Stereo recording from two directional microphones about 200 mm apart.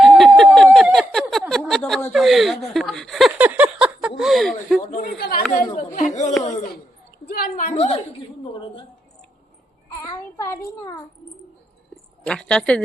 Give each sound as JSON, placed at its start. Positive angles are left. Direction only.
{"t": 0.0, "sound": "a sound", "side_deg": 0}
{"t": 4.2, "sound": "speech", "side_deg": 0}
{"t": 4.9, "sound": "a man's voice", "side_deg": 45}
{"t": 10.0, "sound": "a child's voice", "side_deg": 15}
{"t": 12.2, "sound": "speech", "side_deg": 5}